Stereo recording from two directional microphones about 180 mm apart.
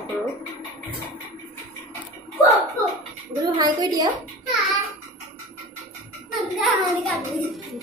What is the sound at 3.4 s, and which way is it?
Speech, 20° right (ahead or behind).